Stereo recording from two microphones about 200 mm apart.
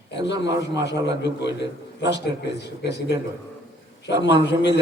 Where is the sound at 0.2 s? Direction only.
60° left (ahead or behind).